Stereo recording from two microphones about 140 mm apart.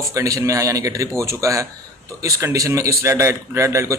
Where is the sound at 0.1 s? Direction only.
20° right (ahead or behind).